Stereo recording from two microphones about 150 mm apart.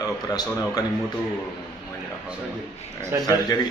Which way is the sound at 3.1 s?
20° right (ahead or behind).